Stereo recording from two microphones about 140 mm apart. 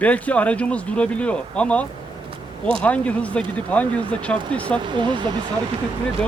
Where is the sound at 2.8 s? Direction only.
10° left (ahead or behind).